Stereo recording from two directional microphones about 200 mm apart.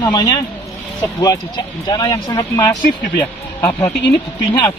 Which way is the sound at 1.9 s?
20° left (ahead or behind).